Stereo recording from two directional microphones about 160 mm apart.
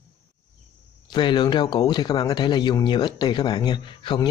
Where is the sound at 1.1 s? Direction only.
30° left (ahead or behind).